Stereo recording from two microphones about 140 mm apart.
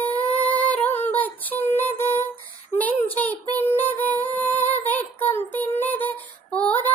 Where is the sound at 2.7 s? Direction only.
10° left (ahead or behind).